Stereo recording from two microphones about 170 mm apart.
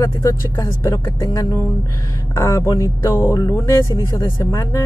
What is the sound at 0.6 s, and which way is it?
Speech, 20° left (ahead or behind).